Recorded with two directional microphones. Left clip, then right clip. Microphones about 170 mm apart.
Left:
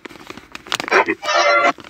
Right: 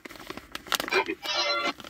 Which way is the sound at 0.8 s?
40° left (ahead or behind).